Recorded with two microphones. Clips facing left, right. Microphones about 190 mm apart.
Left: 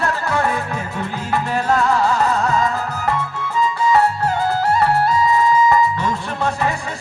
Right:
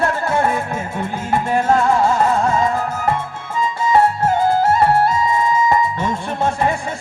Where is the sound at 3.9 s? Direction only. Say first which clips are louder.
Right 5 dB; 25° right (ahead or behind).